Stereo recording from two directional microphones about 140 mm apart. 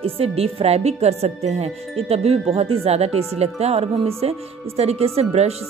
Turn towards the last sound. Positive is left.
turn(degrees=-45)  # may be behind; listen again after turning